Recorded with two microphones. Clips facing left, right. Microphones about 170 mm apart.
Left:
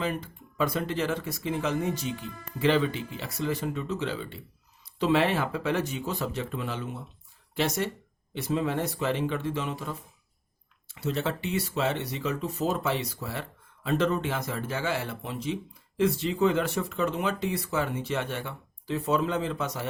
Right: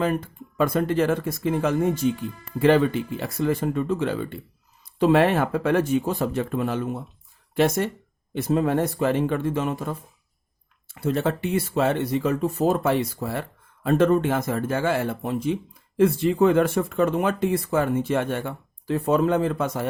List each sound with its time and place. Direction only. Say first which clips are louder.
0.0 s speech: right 7 dB; 50° right (ahead or behind)